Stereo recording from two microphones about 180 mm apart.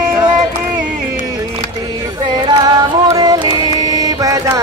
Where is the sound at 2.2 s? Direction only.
25° right (ahead or behind).